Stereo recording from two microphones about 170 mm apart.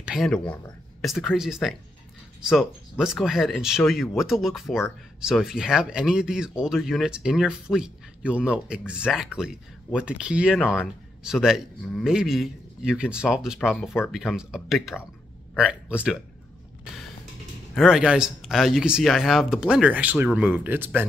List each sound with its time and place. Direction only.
0.0 s speech: centre (ahead or behind)
17.7 s speech: 5° right (ahead or behind)